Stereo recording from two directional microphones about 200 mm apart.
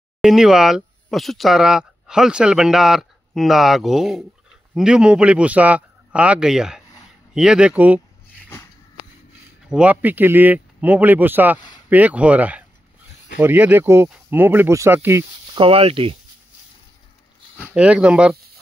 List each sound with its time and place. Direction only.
0.2 s speech: 5° right (ahead or behind)
9.7 s speech: 5° right (ahead or behind)
15.5 s speech: 30° right (ahead or behind)
17.7 s speech: 5° right (ahead or behind)